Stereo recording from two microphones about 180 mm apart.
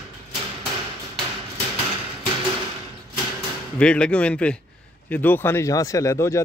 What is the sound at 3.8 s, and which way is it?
A man's voice, 5° left (ahead or behind).